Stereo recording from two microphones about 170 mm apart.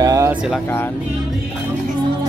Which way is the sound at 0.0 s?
20° right (ahead or behind).